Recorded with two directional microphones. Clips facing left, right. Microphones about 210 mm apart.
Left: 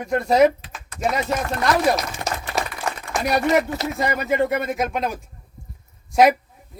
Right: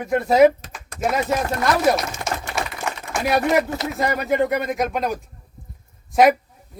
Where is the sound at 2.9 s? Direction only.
35° left (ahead or behind).